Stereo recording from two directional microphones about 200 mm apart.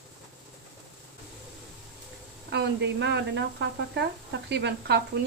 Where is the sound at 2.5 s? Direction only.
55° right (ahead or behind).